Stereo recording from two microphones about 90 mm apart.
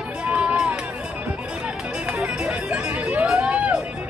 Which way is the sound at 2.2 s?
10° right (ahead or behind).